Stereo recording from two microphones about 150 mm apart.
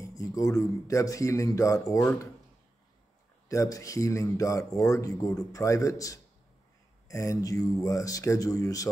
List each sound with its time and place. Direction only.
0.0 s speech: 20° left (ahead or behind)
3.4 s speech: 20° left (ahead or behind)